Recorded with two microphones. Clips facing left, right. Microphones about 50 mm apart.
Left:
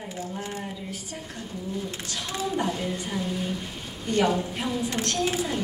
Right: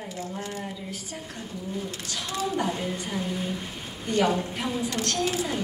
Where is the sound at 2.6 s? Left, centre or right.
Centre.